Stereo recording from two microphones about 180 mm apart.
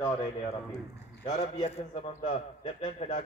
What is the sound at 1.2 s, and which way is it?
A man's voice, 35° left (ahead or behind).